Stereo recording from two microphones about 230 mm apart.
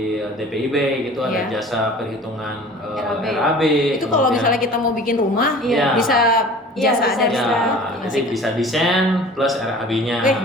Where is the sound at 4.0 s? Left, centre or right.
Left.